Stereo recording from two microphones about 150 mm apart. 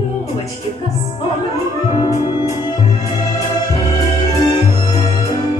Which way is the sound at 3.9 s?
40° left (ahead or behind).